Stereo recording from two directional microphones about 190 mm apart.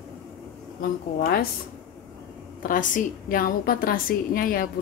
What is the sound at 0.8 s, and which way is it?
Speech, 55° left (ahead or behind).